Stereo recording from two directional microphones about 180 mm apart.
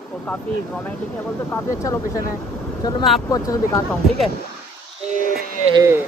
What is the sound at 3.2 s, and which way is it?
Speech, 20° left (ahead or behind).